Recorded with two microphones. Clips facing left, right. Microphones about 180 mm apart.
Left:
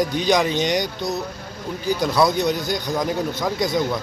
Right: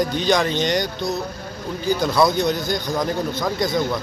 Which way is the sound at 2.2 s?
10° left (ahead or behind).